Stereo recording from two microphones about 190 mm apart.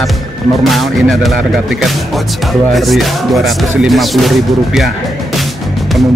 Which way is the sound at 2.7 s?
Centre (ahead or behind).